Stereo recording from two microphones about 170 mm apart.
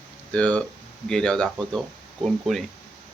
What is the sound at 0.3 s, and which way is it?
Speech, 5° left (ahead or behind).